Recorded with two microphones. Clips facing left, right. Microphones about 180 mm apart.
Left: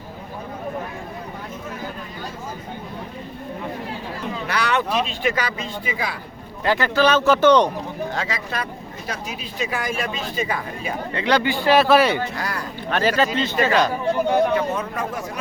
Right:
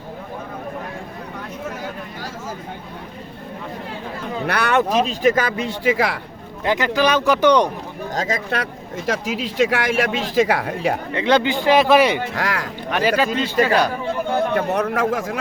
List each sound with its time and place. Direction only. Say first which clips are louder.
4.4 s speech: right 4 dB; 55° right (ahead or behind); by 6.1 s 90° right
6.7 s a man's voice: even; 15° right (ahead or behind)
8.1 s speech: right 8 dB; 40° right (ahead or behind)
9.0 s speech: right 9 dB; 90° right; by 11.0 s 75° right (ahead or behind)
11.1 s a man's voice: right 1 dB; 20° right (ahead or behind)
12.3 s speech: right 4 dB; 90° right
12.9 s a man's voice: right 1 dB; 15° right (ahead or behind)
14.5 s speech: right 3 dB; 70° right (ahead or behind); by 15.4 s 90° right